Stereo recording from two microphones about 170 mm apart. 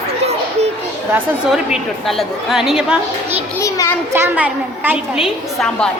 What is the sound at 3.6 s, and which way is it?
Speech, 20° left (ahead or behind).